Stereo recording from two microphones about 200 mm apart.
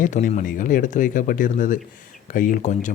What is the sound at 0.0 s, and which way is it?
Speech, 40° left (ahead or behind).